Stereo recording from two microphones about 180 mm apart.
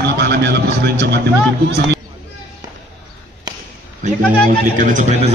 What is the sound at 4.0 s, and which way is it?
A man's voice, 45° right (ahead or behind).